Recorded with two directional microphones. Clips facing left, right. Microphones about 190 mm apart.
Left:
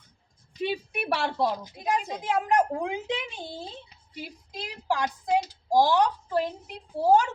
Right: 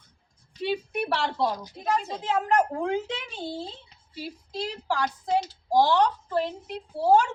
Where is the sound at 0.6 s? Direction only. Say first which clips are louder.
Right 2 dB; 15° left (ahead or behind).